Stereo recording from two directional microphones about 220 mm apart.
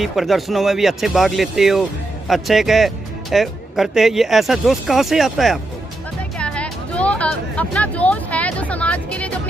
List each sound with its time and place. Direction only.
0.0 s speech: centre (ahead or behind)
6.3 s music: 5° left (ahead or behind)